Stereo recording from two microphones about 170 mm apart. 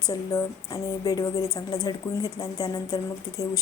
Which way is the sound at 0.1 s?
20° left (ahead or behind).